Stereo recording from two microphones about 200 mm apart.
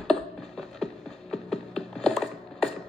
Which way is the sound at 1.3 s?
Centre (ahead or behind).